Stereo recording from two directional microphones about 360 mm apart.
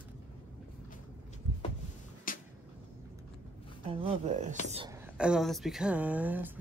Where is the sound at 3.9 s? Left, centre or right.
Centre.